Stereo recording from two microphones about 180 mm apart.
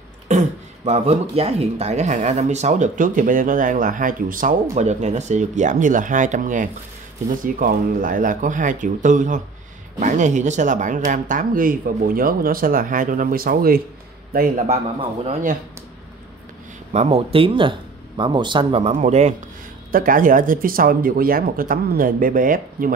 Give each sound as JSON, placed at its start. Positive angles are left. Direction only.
{"t": 0.3, "sound": "speech", "side_deg": -40}
{"t": 14.7, "sound": "speech", "side_deg": -35}
{"t": 16.9, "sound": "speech", "side_deg": -35}
{"t": 19.9, "sound": "speech", "side_deg": -50}